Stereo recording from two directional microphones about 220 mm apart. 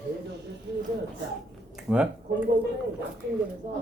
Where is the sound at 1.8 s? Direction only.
5° right (ahead or behind).